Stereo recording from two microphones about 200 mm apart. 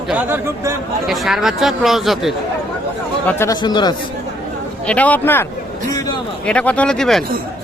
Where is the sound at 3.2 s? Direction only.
10° left (ahead or behind).